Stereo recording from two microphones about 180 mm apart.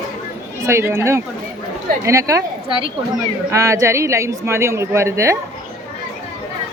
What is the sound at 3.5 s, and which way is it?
A woman's voice, 15° right (ahead or behind).